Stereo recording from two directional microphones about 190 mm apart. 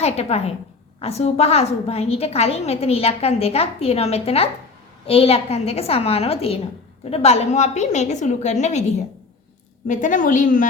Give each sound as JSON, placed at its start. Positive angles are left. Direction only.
{"t": 0.0, "sound": "a woman's voice", "side_deg": 35}
{"t": 9.8, "sound": "a woman's voice", "side_deg": 45}